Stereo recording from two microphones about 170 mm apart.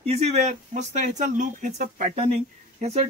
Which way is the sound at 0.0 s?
35° right (ahead or behind).